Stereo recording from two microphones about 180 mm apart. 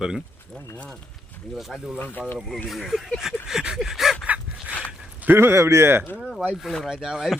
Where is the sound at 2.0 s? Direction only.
10° left (ahead or behind).